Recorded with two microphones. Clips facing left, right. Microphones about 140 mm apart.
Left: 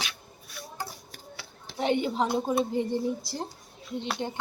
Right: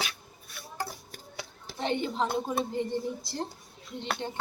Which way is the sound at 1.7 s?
10° left (ahead or behind).